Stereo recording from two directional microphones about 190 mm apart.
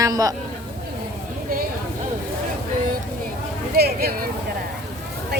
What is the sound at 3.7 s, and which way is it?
Speech, 55° right (ahead or behind).